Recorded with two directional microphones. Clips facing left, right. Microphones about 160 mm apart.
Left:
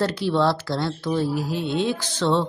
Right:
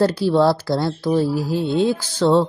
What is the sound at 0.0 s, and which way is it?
A woman's voice, 35° right (ahead or behind).